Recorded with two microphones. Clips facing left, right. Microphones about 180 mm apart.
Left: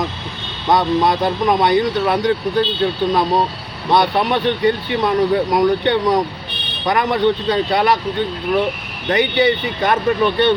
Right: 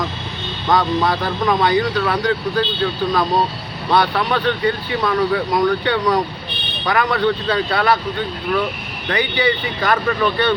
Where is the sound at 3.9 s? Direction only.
20° left (ahead or behind).